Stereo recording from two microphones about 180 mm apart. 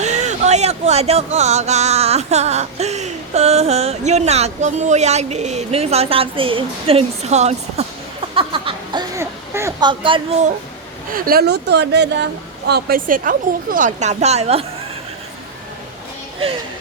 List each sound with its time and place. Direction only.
0.0 s music: 40° right (ahead or behind)
8.4 s a sound: 30° right (ahead or behind)
9.9 s speech: 30° right (ahead or behind)
11.1 s speech: 55° right (ahead or behind); by 14.7 s 35° right (ahead or behind)